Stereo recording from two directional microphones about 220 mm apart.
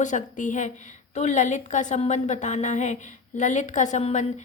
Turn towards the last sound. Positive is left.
turn(degrees=30)  # may be behind; listen again after turning